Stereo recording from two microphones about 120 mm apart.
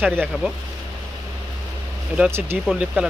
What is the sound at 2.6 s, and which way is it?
Speech, centre (ahead or behind).